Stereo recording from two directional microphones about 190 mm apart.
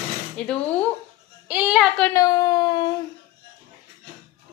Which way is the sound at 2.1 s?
20° left (ahead or behind).